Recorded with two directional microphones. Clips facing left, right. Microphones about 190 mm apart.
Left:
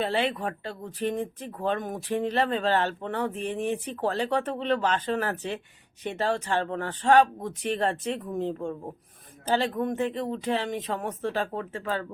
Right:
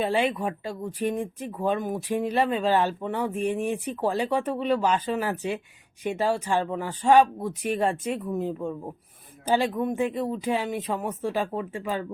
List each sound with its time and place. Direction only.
0.0 s speech: 10° right (ahead or behind)